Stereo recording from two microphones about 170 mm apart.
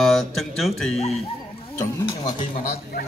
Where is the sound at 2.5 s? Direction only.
60° left (ahead or behind).